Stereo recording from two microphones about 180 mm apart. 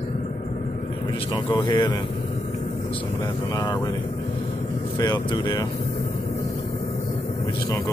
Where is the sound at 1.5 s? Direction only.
25° left (ahead or behind).